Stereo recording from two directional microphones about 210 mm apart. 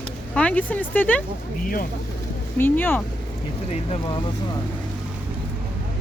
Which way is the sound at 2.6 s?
10° left (ahead or behind).